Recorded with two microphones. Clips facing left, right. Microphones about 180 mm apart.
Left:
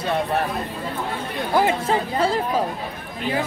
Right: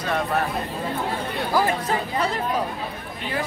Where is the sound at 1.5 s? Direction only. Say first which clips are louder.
Left 3 dB; 20° left (ahead or behind).